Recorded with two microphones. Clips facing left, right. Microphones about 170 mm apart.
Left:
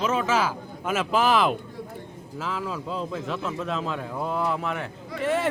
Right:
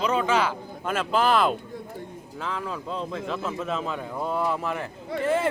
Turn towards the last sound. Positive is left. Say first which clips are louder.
# right 1 dB
turn(degrees=0)  # may be behind; listen again after turning